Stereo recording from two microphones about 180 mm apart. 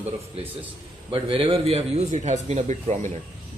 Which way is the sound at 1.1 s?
30° right (ahead or behind).